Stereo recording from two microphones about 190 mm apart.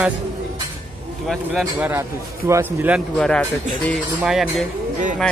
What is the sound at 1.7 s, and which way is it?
Speech, 10° right (ahead or behind).